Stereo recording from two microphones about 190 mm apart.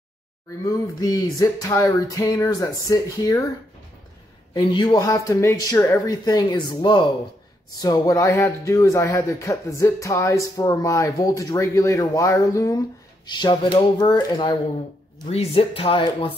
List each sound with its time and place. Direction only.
0.7 s speech: 15° left (ahead or behind)
4.6 s speech: 25° left (ahead or behind)